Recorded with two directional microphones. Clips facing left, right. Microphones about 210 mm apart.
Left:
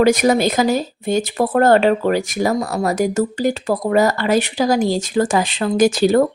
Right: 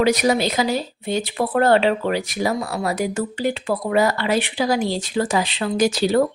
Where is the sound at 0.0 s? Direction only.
50° left (ahead or behind).